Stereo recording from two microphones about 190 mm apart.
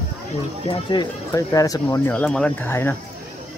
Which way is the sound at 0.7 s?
20° left (ahead or behind).